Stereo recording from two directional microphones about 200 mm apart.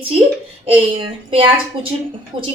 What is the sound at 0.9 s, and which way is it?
Speech, 25° right (ahead or behind).